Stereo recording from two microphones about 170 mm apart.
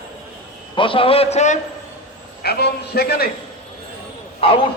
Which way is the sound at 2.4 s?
65° left (ahead or behind).